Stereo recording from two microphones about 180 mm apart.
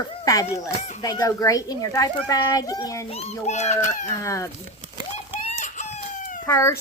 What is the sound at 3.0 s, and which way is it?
Speech, 35° left (ahead or behind).